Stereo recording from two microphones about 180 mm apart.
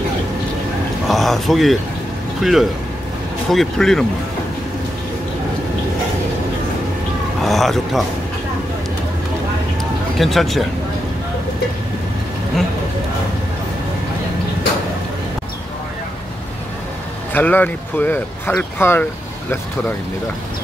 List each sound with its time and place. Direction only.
1.0 s speech: centre (ahead or behind)
7.4 s speech: centre (ahead or behind)
10.1 s speech: centre (ahead or behind)
17.3 s speech: 10° left (ahead or behind)